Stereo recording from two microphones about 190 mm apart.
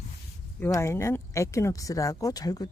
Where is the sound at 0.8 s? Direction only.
15° left (ahead or behind).